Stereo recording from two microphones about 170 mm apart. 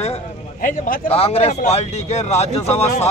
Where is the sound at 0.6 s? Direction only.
55° left (ahead or behind).